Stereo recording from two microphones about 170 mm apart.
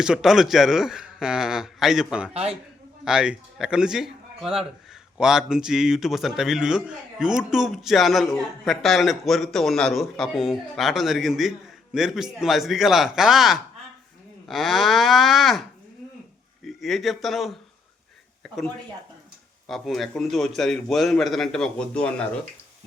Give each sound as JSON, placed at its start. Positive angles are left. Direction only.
{"t": 0.0, "sound": "a man's voice", "side_deg": -5}
{"t": 2.3, "sound": "speech", "side_deg": -35}
{"t": 3.0, "sound": "a man's voice", "side_deg": -5}
{"t": 16.6, "sound": "speech", "side_deg": 0}
{"t": 19.6, "sound": "a man's voice", "side_deg": 0}